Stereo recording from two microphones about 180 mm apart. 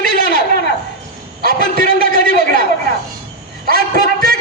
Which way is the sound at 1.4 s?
55° right (ahead or behind).